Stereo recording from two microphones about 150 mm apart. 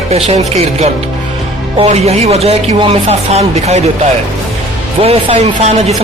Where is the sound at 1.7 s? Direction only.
45° right (ahead or behind).